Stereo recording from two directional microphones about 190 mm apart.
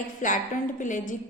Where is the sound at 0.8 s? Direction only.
45° left (ahead or behind).